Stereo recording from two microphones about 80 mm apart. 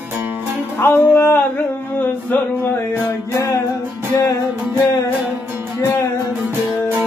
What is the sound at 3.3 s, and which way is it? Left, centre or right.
Music, left.